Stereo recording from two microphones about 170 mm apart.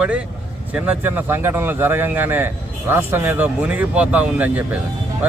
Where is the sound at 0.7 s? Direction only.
10° right (ahead or behind).